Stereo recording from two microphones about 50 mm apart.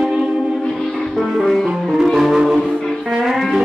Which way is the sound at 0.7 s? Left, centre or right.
Centre.